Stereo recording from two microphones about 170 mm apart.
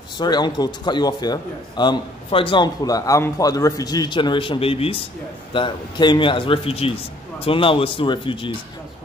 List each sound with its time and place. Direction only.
0.2 s a man's voice: 25° left (ahead or behind)